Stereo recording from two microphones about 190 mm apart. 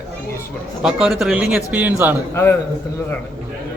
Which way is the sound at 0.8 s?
5° right (ahead or behind).